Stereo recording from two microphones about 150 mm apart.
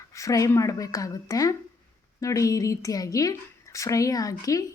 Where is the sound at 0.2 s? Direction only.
20° left (ahead or behind).